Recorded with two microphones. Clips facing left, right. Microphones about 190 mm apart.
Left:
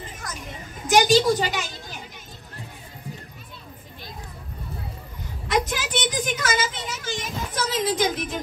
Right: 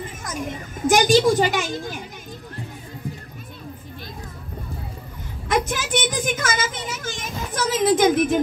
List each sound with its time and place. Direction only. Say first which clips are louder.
0.8 s a woman's voice: right 2 dB; 45° right (ahead or behind)
5.5 s a woman's voice: right 2 dB; 45° right (ahead or behind)